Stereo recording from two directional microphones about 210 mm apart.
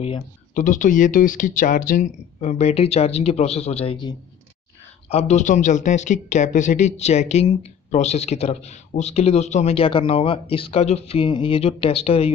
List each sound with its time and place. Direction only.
0.0 s speech: 35° left (ahead or behind)
5.1 s speech: 35° left (ahead or behind)